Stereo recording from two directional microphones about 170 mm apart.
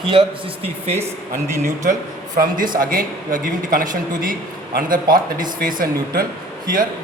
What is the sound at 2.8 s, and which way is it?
A man's voice, 55° right (ahead or behind).